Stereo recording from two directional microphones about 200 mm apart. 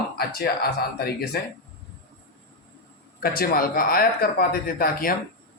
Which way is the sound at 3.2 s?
50° left (ahead or behind).